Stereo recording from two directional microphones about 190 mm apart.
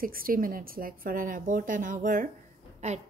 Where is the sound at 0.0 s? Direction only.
50° right (ahead or behind).